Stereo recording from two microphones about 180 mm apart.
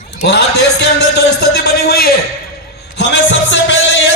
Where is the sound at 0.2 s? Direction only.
70° left (ahead or behind).